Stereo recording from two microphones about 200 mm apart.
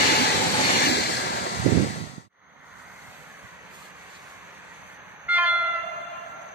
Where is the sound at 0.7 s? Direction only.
55° left (ahead or behind).